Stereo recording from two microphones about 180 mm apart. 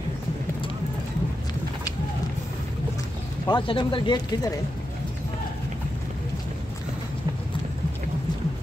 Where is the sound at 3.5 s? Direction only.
25° left (ahead or behind).